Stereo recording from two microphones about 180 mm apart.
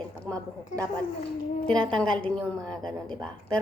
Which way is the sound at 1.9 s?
5° left (ahead or behind).